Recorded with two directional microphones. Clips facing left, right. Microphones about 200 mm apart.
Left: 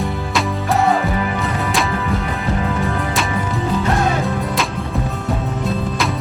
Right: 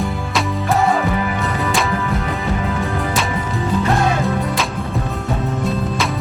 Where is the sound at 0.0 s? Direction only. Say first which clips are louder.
Even; centre (ahead or behind).